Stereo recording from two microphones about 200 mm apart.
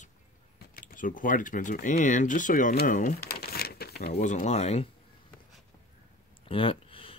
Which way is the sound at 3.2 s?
50° left (ahead or behind).